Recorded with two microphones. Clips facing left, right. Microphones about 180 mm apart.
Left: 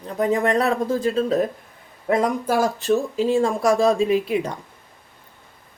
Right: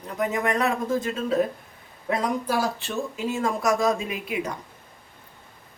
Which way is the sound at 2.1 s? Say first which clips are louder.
Left 5 dB; 50° left (ahead or behind).